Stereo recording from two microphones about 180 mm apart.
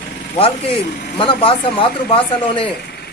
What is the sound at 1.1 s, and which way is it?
A man's voice, 30° left (ahead or behind).